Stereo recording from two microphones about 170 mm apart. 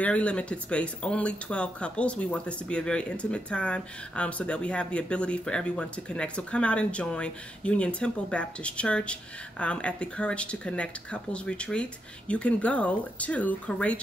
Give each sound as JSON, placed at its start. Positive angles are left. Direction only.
{"t": 0.0, "sound": "speech", "side_deg": 5}